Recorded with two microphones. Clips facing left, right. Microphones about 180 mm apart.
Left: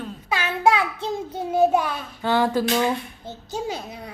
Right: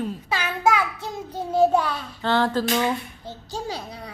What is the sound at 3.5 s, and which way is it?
Child singing, 20° left (ahead or behind).